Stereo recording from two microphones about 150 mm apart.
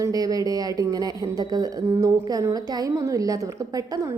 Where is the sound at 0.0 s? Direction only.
25° right (ahead or behind).